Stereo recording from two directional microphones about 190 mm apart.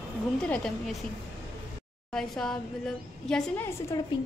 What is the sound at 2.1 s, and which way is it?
A woman's voice, centre (ahead or behind).